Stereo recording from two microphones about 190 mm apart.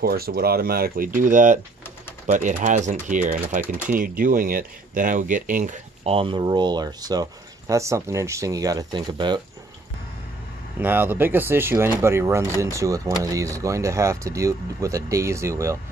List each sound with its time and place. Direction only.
0.0 s speech: 55° right (ahead or behind); by 9.4 s 25° right (ahead or behind)
10.8 s speech: 10° right (ahead or behind)